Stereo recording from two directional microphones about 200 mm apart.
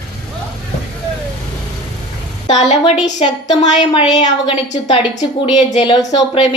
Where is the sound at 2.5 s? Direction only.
35° left (ahead or behind).